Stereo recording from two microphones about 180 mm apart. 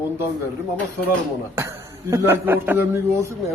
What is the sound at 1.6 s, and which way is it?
A man's voice, 15° right (ahead or behind).